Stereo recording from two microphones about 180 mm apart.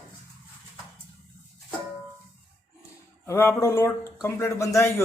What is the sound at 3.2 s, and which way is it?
Speech, 15° left (ahead or behind).